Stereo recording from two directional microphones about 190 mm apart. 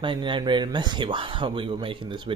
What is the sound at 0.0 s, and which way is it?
Speech, 25° right (ahead or behind).